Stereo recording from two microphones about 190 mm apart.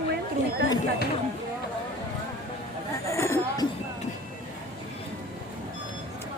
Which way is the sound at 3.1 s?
15° left (ahead or behind).